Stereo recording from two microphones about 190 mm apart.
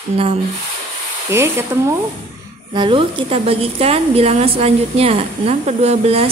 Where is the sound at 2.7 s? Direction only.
25° right (ahead or behind).